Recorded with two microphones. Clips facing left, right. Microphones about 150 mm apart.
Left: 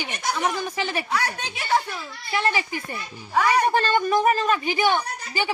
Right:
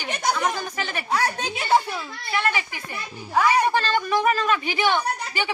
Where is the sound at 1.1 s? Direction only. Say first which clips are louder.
Right 3 dB; 30° right (ahead or behind).